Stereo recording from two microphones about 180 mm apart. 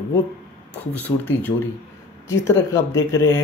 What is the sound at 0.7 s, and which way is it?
Speech, 10° left (ahead or behind).